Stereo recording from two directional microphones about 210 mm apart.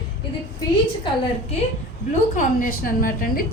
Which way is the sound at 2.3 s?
40° left (ahead or behind).